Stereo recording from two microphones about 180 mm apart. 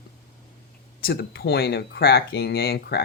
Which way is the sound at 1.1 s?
65° left (ahead or behind).